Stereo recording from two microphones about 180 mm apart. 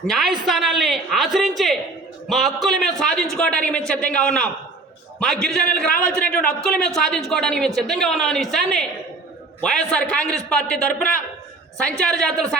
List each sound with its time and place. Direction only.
0.1 s a man's voice: centre (ahead or behind)